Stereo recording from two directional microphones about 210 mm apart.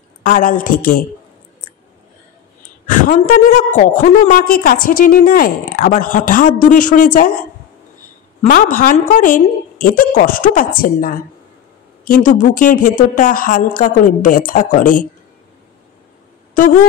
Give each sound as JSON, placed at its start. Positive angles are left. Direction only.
{"t": 0.2, "sound": "a woman's voice", "side_deg": 40}
{"t": 2.9, "sound": "a woman's voice", "side_deg": 40}
{"t": 8.4, "sound": "a woman's voice", "side_deg": 40}
{"t": 16.5, "sound": "a sound", "side_deg": 40}